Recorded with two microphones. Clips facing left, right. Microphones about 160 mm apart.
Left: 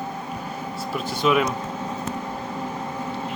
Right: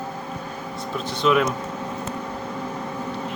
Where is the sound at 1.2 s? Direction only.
5° left (ahead or behind).